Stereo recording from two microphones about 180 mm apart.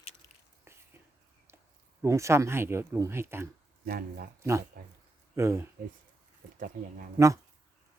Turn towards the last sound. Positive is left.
turn(degrees=-15)  # may be behind; listen again after turning